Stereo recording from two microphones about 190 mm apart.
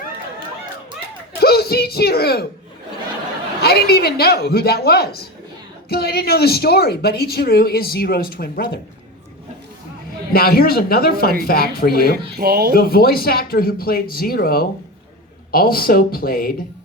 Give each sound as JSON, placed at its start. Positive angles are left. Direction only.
{"t": 0.3, "sound": "chatter", "side_deg": -25}
{"t": 1.4, "sound": "speech", "side_deg": 55}
{"t": 3.6, "sound": "speech", "side_deg": 55}
{"t": 10.3, "sound": "speech", "side_deg": 55}
{"t": 12.4, "sound": "speech", "side_deg": -60}
{"t": 12.7, "sound": "speech", "side_deg": 50}